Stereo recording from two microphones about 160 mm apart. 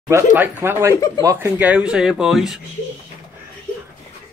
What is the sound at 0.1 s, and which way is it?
Speech, 10° right (ahead or behind).